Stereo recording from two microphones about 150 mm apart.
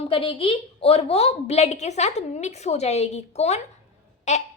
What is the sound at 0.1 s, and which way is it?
A woman's voice, 35° left (ahead or behind).